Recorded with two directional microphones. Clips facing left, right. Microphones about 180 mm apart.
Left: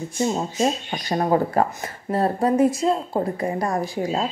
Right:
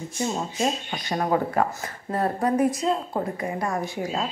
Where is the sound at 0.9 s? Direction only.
35° left (ahead or behind).